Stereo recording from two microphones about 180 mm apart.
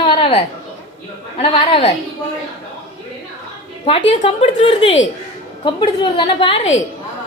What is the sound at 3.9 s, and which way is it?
A woman's voice, 35° left (ahead or behind).